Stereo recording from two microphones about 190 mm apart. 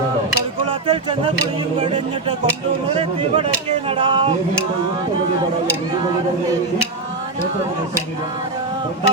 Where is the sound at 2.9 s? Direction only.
30° right (ahead or behind).